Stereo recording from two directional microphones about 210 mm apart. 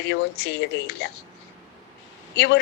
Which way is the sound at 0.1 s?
55° left (ahead or behind).